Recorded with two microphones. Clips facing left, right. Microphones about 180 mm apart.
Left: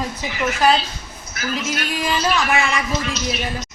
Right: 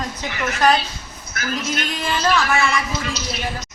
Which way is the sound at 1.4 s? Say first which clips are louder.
Even; 55° right (ahead or behind).